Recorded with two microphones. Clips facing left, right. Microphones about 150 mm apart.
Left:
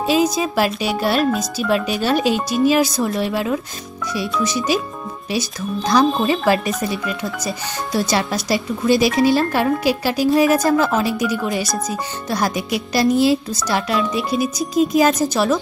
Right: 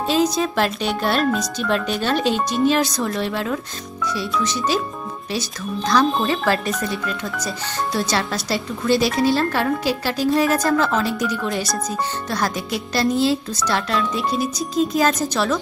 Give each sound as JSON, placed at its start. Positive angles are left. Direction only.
{"t": 0.0, "sound": "speech", "side_deg": 10}
{"t": 5.9, "sound": "speech", "side_deg": 20}